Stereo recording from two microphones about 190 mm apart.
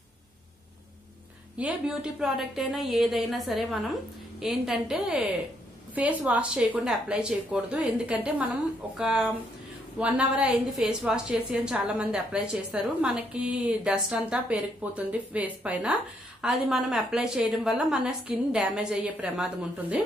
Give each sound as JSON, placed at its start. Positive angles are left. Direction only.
{"t": 1.6, "sound": "a woman's voice", "side_deg": -5}